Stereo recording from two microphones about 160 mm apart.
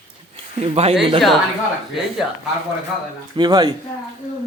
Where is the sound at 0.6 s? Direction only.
40° right (ahead or behind).